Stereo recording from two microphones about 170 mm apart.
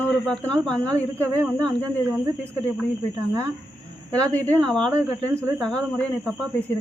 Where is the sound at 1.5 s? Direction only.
5° left (ahead or behind).